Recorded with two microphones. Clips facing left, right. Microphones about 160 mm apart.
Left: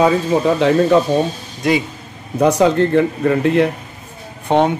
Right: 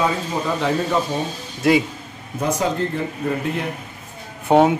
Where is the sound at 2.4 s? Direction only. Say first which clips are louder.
Left 8 dB; 75° left (ahead or behind).